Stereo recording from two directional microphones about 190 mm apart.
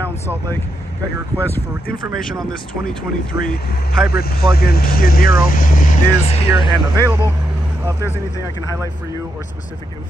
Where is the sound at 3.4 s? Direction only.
50° left (ahead or behind).